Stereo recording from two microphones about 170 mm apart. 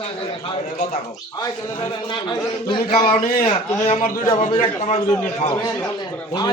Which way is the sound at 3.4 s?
35° left (ahead or behind).